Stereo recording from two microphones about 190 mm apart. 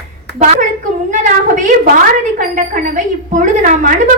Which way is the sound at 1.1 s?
40° right (ahead or behind).